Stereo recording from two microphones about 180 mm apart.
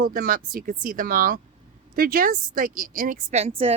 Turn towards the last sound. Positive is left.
turn(degrees=-35)  # may be behind; listen again after turning